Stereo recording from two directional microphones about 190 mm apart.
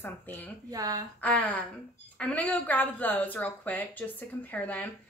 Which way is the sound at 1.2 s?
5° left (ahead or behind).